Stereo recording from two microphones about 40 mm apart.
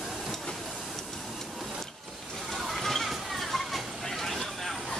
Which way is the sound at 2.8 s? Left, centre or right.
Centre.